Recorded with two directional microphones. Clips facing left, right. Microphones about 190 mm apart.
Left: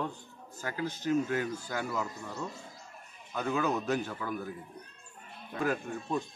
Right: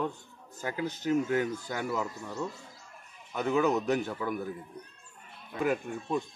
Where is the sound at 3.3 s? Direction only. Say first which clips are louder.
Right 4 dB; 15° right (ahead or behind).